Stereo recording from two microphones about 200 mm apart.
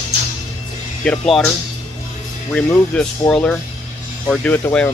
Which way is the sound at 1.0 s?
5° left (ahead or behind).